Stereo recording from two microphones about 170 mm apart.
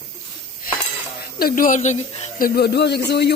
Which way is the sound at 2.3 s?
60° left (ahead or behind).